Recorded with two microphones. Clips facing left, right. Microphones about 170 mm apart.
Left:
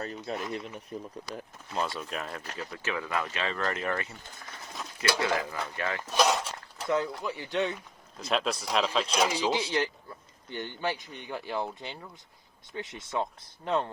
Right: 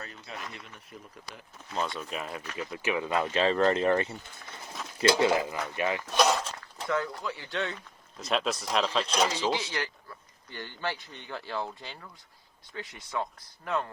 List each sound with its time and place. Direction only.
0.0 s speech: 35° left (ahead or behind)
1.7 s speech: centre (ahead or behind); by 3.2 s 20° right (ahead or behind)
3.2 s speech: 30° right (ahead or behind)
6.1 s a sound: centre (ahead or behind)
6.8 s speech: 20° left (ahead or behind)
8.2 s speech: centre (ahead or behind); by 13.9 s 25° left (ahead or behind)